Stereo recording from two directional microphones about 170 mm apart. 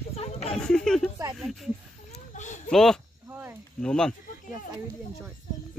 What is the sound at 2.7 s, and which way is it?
Speech, centre (ahead or behind).